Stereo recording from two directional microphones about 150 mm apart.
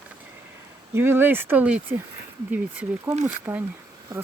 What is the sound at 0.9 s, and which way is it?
Speech, 15° right (ahead or behind).